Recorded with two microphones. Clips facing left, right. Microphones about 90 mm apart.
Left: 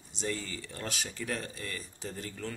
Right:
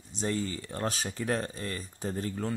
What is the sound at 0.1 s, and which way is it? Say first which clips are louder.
Speech: right 5 dB; 35° right (ahead or behind).